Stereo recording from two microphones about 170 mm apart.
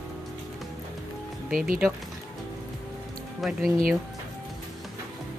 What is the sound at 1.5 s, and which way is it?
Speech, 55° right (ahead or behind).